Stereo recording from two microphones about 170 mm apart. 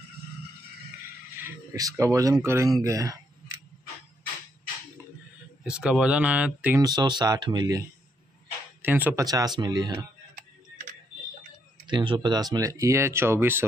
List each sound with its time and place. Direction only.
1.3 s speech: 15° right (ahead or behind)
5.6 s speech: 5° right (ahead or behind)
6.8 s speech: 25° right (ahead or behind)
8.8 s speech: 10° right (ahead or behind)
9.2 s speech: 20° right (ahead or behind)
11.9 s speech: 30° right (ahead or behind)